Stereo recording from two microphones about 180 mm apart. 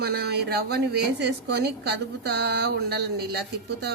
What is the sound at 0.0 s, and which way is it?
A woman's voice, 60° right (ahead or behind).